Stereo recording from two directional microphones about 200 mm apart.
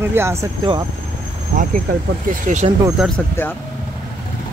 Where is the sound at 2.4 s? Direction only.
35° right (ahead or behind).